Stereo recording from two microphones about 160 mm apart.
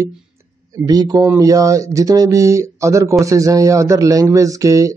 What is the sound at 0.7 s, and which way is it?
Speech, 20° right (ahead or behind).